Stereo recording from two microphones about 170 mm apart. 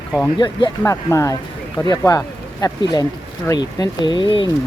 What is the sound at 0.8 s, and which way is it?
Speech, 15° left (ahead or behind).